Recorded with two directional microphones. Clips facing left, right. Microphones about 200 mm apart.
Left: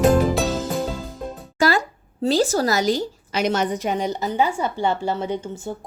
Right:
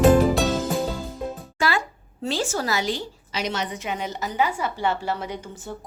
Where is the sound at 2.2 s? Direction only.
35° left (ahead or behind).